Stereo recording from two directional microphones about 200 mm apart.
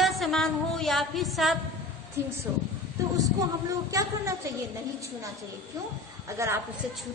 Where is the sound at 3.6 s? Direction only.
15° right (ahead or behind).